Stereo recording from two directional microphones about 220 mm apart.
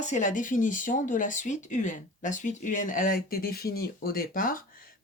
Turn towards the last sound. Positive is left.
turn(degrees=40)  # may be behind; listen again after turning